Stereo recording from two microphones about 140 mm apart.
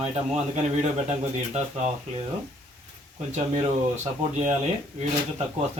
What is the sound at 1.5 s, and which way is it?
Speech, 55° right (ahead or behind).